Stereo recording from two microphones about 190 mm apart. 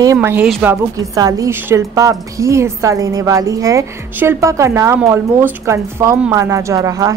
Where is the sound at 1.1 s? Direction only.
20° right (ahead or behind).